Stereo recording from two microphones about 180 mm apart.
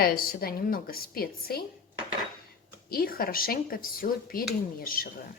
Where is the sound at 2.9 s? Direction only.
55° left (ahead or behind).